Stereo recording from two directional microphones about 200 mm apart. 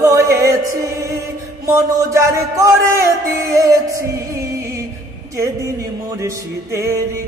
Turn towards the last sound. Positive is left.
turn(degrees=-15)  # may be behind; listen again after turning